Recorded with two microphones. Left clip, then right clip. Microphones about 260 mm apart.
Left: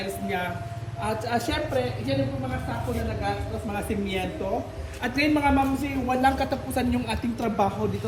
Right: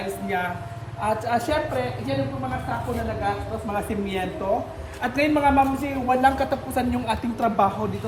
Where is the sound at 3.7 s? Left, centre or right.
Right.